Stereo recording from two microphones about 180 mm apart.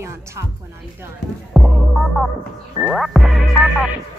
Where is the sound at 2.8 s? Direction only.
Centre (ahead or behind).